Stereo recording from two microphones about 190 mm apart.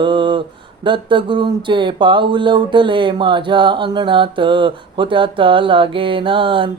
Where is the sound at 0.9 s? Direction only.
25° right (ahead or behind).